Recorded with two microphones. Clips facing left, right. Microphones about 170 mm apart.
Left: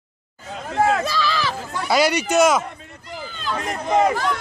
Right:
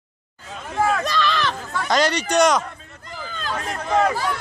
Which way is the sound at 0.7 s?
25° left (ahead or behind).